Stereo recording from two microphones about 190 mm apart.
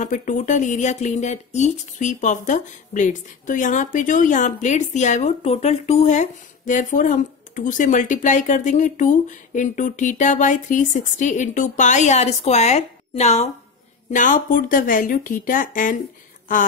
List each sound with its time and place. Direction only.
0.0 s speech: 40° left (ahead or behind)